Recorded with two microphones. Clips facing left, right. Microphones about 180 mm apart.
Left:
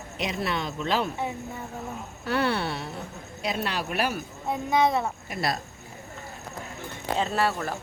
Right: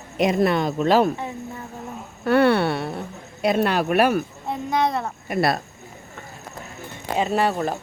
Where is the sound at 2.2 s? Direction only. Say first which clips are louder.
Right 9 dB; 60° right (ahead or behind).